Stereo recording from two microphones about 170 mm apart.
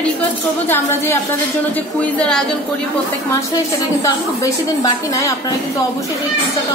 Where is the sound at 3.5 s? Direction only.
20° left (ahead or behind).